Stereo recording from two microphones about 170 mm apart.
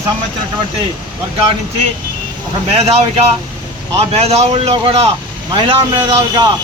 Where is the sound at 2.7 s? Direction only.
35° right (ahead or behind).